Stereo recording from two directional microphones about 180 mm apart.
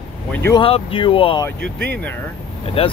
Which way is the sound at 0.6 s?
30° left (ahead or behind).